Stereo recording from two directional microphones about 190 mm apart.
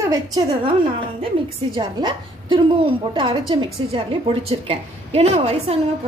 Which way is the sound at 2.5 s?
30° right (ahead or behind).